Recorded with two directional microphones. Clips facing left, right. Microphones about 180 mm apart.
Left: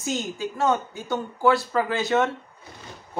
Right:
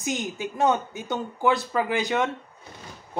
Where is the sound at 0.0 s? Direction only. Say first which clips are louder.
Left 1 dB; 15° right (ahead or behind).